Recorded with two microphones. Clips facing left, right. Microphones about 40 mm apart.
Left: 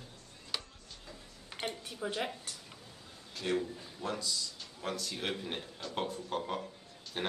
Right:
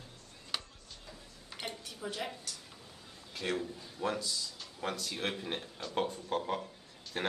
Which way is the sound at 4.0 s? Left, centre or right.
Centre.